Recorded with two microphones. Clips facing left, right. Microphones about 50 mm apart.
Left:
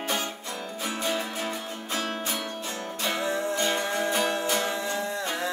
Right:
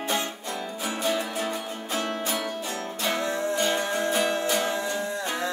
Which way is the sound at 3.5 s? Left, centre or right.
Centre.